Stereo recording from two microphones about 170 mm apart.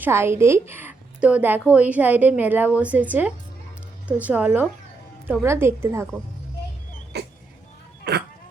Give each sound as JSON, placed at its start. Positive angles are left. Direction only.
{"t": 0.0, "sound": "a woman's voice", "side_deg": -15}
{"t": 7.1, "sound": "vehicle", "side_deg": -75}